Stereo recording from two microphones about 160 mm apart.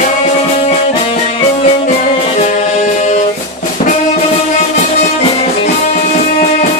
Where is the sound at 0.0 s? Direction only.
45° left (ahead or behind).